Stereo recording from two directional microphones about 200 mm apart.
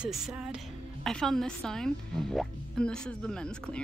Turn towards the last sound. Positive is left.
turn(degrees=5)  # may be behind; listen again after turning